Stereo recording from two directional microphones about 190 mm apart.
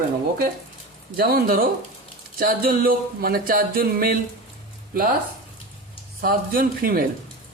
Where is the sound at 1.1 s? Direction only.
50° right (ahead or behind).